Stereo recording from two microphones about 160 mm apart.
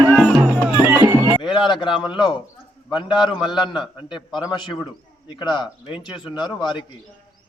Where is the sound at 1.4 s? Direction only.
30° left (ahead or behind).